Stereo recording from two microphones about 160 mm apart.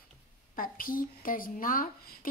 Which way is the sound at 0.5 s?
60° left (ahead or behind).